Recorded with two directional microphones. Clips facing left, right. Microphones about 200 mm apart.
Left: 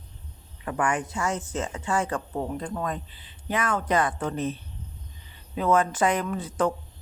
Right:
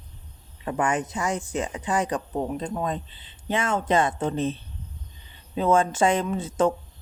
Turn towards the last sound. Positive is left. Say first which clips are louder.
# right 3 dB
turn(degrees=-25)  # may be behind; listen again after turning